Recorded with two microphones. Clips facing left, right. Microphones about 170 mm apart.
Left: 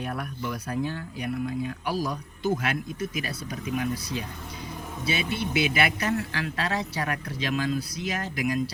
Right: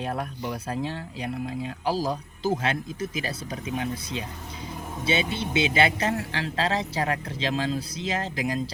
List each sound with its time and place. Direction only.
0.0 s speech: 30° right (ahead or behind)